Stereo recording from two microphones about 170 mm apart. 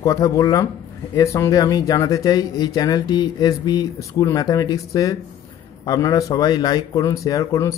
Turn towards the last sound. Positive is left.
turn(degrees=20)  # may be behind; listen again after turning